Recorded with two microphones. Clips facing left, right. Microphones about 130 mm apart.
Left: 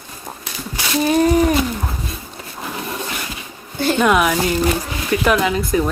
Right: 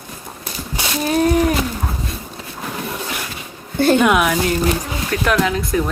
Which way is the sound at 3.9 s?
5° right (ahead or behind).